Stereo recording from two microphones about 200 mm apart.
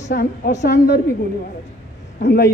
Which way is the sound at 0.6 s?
55° left (ahead or behind).